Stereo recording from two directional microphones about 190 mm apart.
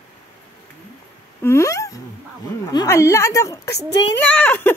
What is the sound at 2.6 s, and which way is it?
A woman's voice, 15° left (ahead or behind).